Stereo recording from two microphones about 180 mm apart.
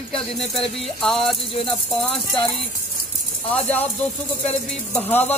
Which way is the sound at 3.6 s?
10° left (ahead or behind).